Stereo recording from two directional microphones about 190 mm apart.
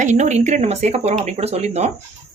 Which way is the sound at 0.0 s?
40° right (ahead or behind).